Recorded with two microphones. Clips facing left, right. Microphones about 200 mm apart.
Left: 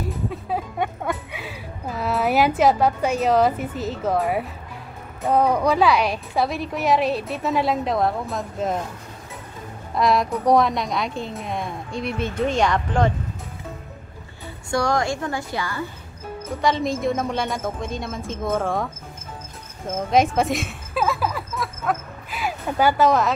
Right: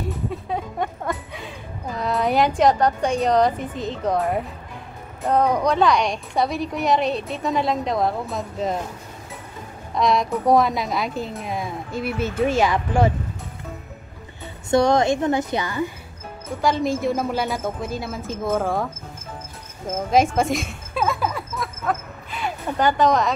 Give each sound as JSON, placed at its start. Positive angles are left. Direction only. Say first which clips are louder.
{"t": 0.0, "sound": "a woman's voice", "louder": "even", "side_deg": 0}
{"t": 9.9, "sound": "a woman's voice", "louder": "even", "side_deg": 0}
{"t": 14.7, "sound": "a woman's voice", "louder": "right 5 dB", "side_deg": -20}
{"t": 16.6, "sound": "a woman's voice", "louder": "right 1 dB", "side_deg": 0}
{"t": 20.1, "sound": "speech", "louder": "even", "side_deg": 0}